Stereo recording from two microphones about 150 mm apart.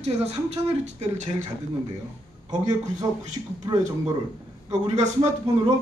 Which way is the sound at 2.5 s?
25° right (ahead or behind).